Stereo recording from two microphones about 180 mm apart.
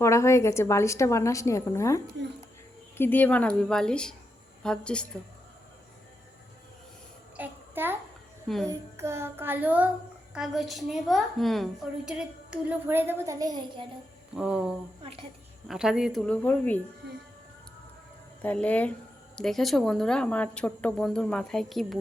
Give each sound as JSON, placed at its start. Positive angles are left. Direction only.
{"t": 0.0, "sound": "a woman's voice", "side_deg": 15}
{"t": 3.0, "sound": "a woman's voice", "side_deg": 10}
{"t": 7.3, "sound": "a sound", "side_deg": -10}
{"t": 8.6, "sound": "child singing", "side_deg": -15}
{"t": 10.3, "sound": "a woman's voice", "side_deg": 0}
{"t": 14.3, "sound": "a woman's voice", "side_deg": -5}
{"t": 15.0, "sound": "a woman's voice", "side_deg": -30}
{"t": 15.6, "sound": "a woman's voice", "side_deg": 0}
{"t": 18.4, "sound": "a woman's voice", "side_deg": 5}